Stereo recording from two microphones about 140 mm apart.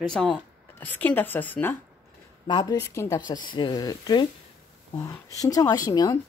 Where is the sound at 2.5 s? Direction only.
30° left (ahead or behind).